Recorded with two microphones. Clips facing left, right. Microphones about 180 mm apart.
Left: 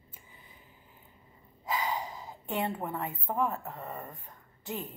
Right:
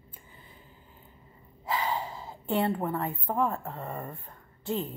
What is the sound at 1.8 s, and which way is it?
Gasp, 25° right (ahead or behind).